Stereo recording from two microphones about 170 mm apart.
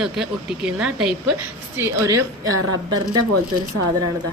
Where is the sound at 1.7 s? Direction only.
20° right (ahead or behind).